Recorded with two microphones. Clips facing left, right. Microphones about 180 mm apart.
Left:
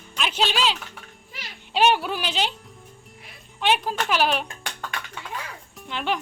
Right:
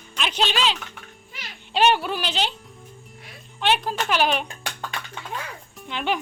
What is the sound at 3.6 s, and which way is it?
Speech, 5° left (ahead or behind).